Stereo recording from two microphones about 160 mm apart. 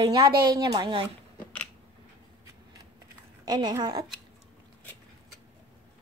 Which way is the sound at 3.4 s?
25° right (ahead or behind).